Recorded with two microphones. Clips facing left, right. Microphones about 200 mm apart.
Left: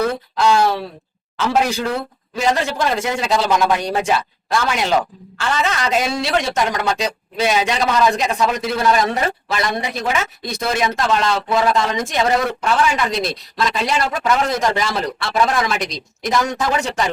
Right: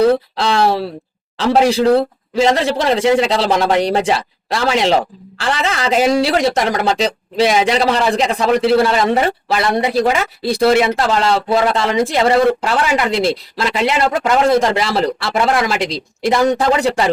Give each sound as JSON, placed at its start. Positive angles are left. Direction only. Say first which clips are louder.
{"t": 0.0, "sound": "speech", "louder": "right 5 dB", "side_deg": -30}